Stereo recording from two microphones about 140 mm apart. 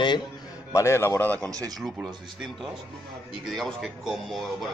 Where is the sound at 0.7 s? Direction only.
20° left (ahead or behind).